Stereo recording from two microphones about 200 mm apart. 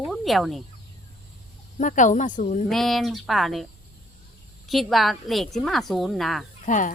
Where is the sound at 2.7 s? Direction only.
Centre (ahead or behind).